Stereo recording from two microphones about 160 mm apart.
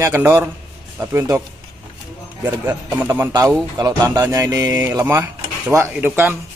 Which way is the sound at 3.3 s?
25° right (ahead or behind).